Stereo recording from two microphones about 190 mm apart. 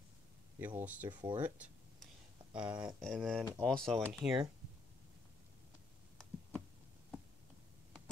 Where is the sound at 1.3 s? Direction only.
10° right (ahead or behind).